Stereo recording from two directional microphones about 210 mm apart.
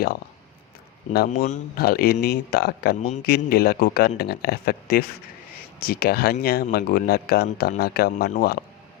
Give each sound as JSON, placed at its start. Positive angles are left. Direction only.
{"t": 1.1, "sound": "speech", "side_deg": 50}